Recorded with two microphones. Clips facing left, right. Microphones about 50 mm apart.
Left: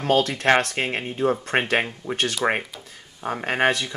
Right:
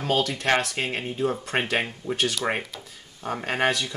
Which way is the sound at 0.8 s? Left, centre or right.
Left.